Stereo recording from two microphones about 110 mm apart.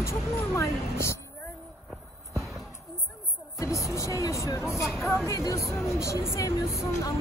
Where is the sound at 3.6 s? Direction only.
30° left (ahead or behind).